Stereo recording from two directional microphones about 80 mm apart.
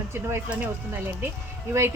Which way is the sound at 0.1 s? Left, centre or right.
Right.